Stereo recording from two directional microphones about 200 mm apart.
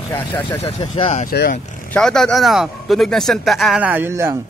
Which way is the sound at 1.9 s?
5° left (ahead or behind).